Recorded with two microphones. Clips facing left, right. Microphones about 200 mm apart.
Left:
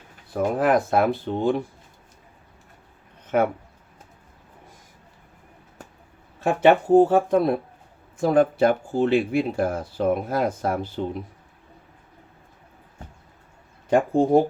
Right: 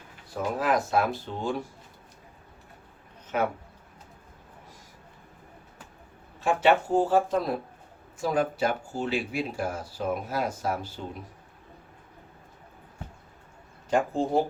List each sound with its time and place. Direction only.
0.3 s speech: 55° left (ahead or behind)
3.3 s speech: 55° left (ahead or behind)
6.7 s speech: 55° left (ahead or behind)
13.9 s speech: 55° left (ahead or behind)